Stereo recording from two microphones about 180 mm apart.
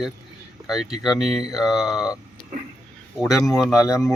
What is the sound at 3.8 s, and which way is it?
Speech, 20° left (ahead or behind).